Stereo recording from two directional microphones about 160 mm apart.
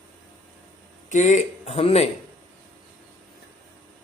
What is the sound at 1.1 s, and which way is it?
A man's voice, 50° left (ahead or behind).